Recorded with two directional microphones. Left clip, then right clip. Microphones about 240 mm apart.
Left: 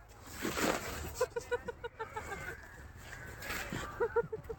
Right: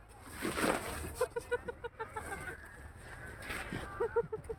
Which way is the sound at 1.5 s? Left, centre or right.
Centre.